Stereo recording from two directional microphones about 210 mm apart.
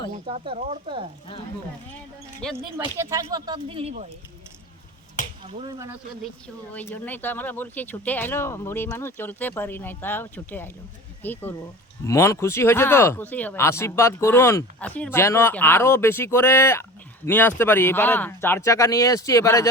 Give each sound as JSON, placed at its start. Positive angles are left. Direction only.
{"t": 0.3, "sound": "speech", "side_deg": -30}
{"t": 2.4, "sound": "speech", "side_deg": 5}
{"t": 2.7, "sound": "speech", "side_deg": -15}
{"t": 5.5, "sound": "speech", "side_deg": -30}
{"t": 6.7, "sound": "speech", "side_deg": 10}